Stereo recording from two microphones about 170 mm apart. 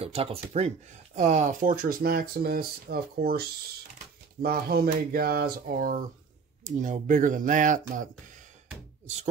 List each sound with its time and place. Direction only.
0.0 s speech: 35° right (ahead or behind)